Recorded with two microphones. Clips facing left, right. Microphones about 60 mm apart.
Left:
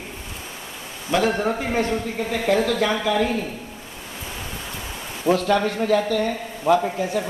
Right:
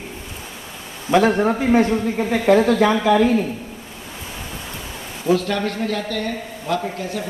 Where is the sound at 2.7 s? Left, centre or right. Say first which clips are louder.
Right 6 dB; right.